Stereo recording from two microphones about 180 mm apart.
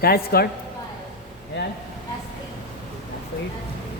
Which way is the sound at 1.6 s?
75° left (ahead or behind).